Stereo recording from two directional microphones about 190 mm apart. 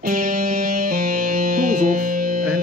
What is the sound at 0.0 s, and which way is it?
Music, 50° right (ahead or behind).